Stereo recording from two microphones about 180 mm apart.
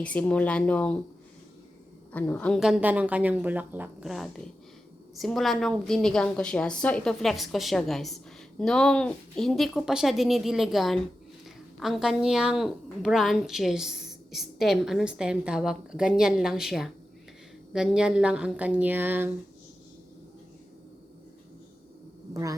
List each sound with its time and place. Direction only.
0.0 s speech: 5° left (ahead or behind)
2.1 s speech: 10° left (ahead or behind)
2.6 s a woman's voice: 5° right (ahead or behind)
22.3 s speech: 20° right (ahead or behind)